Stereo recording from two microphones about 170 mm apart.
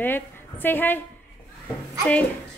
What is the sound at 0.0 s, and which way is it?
A woman's voice, 10° left (ahead or behind).